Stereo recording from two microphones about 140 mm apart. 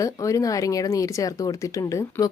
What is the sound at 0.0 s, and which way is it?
Speech, 25° left (ahead or behind).